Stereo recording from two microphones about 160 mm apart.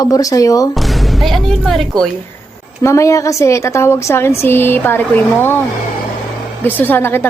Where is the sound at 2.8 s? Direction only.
20° left (ahead or behind).